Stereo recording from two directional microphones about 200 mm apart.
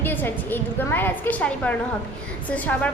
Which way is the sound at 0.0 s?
10° left (ahead or behind).